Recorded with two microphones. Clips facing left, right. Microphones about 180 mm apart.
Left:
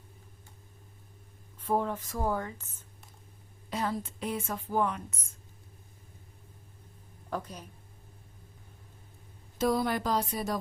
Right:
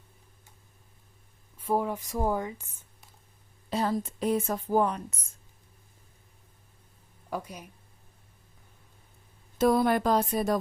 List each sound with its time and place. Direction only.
1.5 s a woman's voice: 10° right (ahead or behind)
3.7 s a woman's voice: 35° right (ahead or behind)
7.3 s speech: 10° right (ahead or behind)
9.6 s a sound: 55° right (ahead or behind)